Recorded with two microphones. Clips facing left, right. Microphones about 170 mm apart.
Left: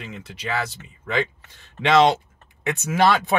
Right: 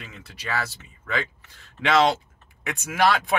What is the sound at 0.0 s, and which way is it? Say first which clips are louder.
Speech: left 5 dB; 20° left (ahead or behind).